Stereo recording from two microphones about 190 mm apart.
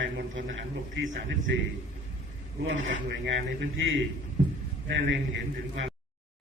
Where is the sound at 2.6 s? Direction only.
90° right.